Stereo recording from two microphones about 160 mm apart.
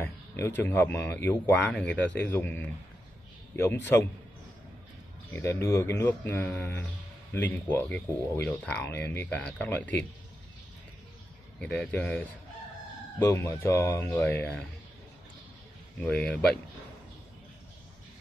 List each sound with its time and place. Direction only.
0.0 s speech: 15° left (ahead or behind)
5.3 s speech: 15° left (ahead or behind)
11.6 s speech: 5° left (ahead or behind)
16.0 s speech: 10° left (ahead or behind)